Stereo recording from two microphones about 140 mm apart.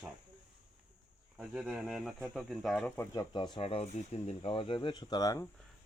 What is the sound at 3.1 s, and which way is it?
Speech, 30° left (ahead or behind).